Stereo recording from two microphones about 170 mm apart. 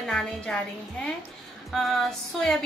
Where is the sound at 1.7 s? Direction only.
5° left (ahead or behind).